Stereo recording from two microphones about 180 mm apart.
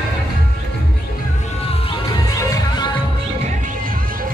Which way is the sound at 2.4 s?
20° left (ahead or behind).